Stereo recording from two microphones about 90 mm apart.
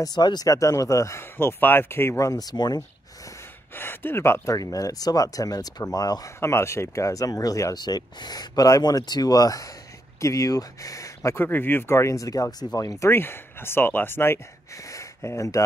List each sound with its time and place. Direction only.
0.0 s speech: 50° left (ahead or behind)
3.7 s speech: 25° left (ahead or behind)
4.6 s speech: 40° left (ahead or behind)
6.4 s speech: 30° left (ahead or behind)
11.4 s speech: 20° left (ahead or behind); by 13.1 s 40° left (ahead or behind)
13.1 s speech: 25° left (ahead or behind)